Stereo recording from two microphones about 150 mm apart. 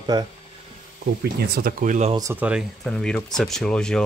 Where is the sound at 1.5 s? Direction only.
70° right (ahead or behind).